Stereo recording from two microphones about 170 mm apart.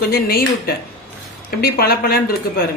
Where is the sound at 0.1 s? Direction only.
65° left (ahead or behind).